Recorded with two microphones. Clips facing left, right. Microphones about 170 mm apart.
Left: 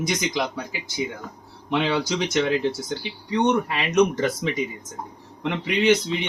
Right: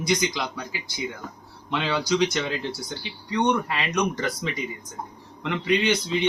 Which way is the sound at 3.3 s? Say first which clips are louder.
Left 2 dB; 20° left (ahead or behind).